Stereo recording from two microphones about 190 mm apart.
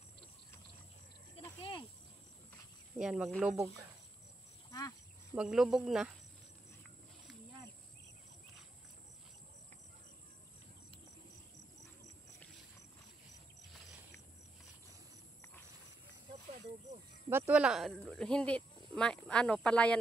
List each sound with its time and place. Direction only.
1.6 s cricket: 25° left (ahead or behind)
3.0 s speech: 5° right (ahead or behind)
4.6 s a sound: 20° left (ahead or behind)
5.3 s speech: 5° right (ahead or behind)
17.3 s speech: 10° right (ahead or behind); by 20.0 s 5° left (ahead or behind)